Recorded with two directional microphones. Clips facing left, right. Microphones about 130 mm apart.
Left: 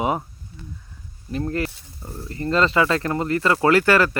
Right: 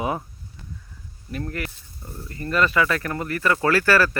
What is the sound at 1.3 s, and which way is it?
Speech, 30° left (ahead or behind).